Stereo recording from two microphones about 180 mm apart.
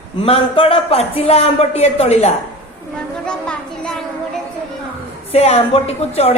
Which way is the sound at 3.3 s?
5° left (ahead or behind).